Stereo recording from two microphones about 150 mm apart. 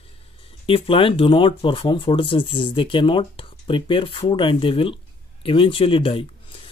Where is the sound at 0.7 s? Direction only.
35° left (ahead or behind).